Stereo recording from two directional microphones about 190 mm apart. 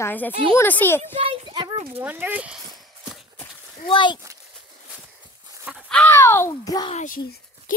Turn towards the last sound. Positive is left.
turn(degrees=50)  # may be behind; listen again after turning